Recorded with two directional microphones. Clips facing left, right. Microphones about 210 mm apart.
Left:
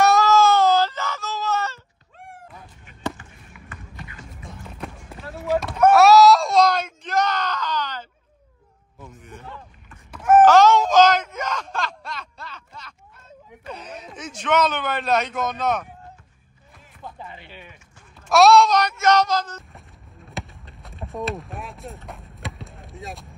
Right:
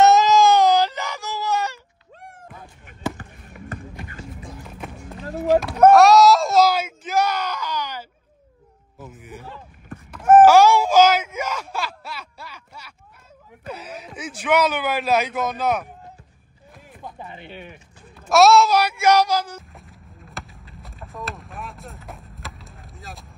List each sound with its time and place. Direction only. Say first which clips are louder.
0.0 s wail: right 2 dB; 20° right (ahead or behind)
3.2 s basketball bounce: right 6 dB; 45° right (ahead or behind)
4.6 s run: left 3 dB; 5° right (ahead or behind)
5.9 s a sound: right 1 dB; 5° left (ahead or behind)
8.9 s music: right 3 dB; 5° right (ahead or behind)
10.4 s a sound: right 1 dB; 10° right (ahead or behind)
13.7 s speech: right 2 dB; 5° right (ahead or behind)
17.0 s music: right 1 dB; 20° right (ahead or behind)
18.3 s speech: even; centre (ahead or behind)
20.2 s basketball bounce: left 4 dB; centre (ahead or behind)